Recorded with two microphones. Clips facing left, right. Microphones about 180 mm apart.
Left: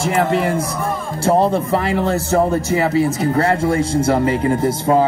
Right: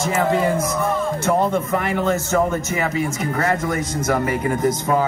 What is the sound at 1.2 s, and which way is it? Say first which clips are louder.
Speech: left 6 dB; 35° left (ahead or behind).